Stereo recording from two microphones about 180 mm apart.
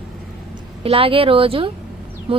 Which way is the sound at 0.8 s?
30° right (ahead or behind).